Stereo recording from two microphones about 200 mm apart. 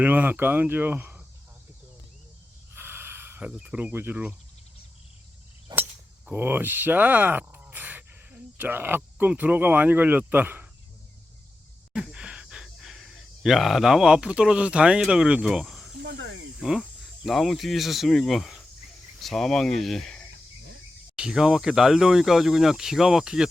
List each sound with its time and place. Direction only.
0.0 s speech: 10° right (ahead or behind)
2.7 s a sound: 10° right (ahead or behind)
5.7 s speech: 10° right (ahead or behind)
11.9 s speech: 5° right (ahead or behind)
16.0 s speech: 65° right (ahead or behind)
16.6 s speech: centre (ahead or behind)